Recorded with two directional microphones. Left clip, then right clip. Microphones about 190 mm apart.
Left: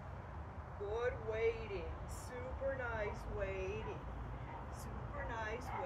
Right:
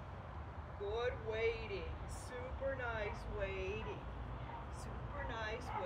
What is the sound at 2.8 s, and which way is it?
Speech, 20° left (ahead or behind).